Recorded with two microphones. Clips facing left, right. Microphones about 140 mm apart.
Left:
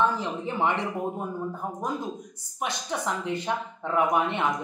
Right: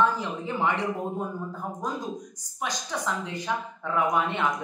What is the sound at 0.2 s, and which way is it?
Speech, 20° left (ahead or behind).